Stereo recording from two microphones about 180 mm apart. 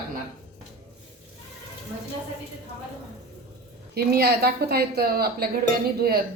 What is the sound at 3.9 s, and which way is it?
A man's voice, 60° right (ahead or behind).